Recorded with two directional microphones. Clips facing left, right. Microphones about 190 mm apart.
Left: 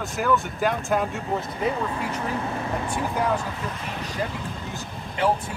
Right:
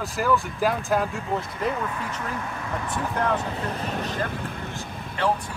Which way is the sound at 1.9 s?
30° left (ahead or behind).